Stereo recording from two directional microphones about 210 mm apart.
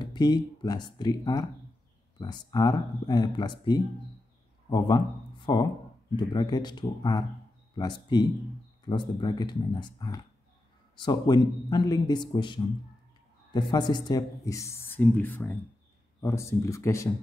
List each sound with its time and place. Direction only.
0.0 s a man's voice: 20° left (ahead or behind)